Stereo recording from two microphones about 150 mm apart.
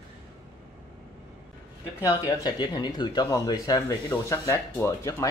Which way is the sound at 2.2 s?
30° left (ahead or behind).